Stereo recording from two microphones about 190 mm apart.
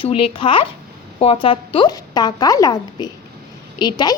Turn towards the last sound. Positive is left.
turn(degrees=20)  # may be behind; listen again after turning